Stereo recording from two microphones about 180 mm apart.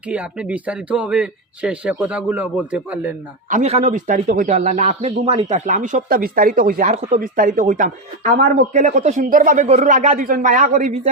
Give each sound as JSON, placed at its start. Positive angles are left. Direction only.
{"t": 0.1, "sound": "speech", "side_deg": -5}
{"t": 3.5, "sound": "speech", "side_deg": -35}